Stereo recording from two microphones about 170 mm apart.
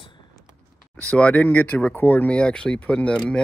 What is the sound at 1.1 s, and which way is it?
Speech, 10° left (ahead or behind).